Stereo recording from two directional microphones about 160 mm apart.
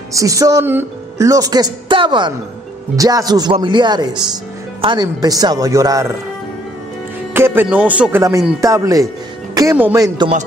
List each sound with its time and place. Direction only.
0.1 s a woman's voice: 20° right (ahead or behind)
7.3 s a woman's voice: 15° right (ahead or behind)